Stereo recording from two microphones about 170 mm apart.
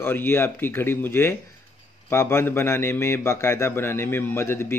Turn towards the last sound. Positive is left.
turn(degrees=15)  # may be behind; listen again after turning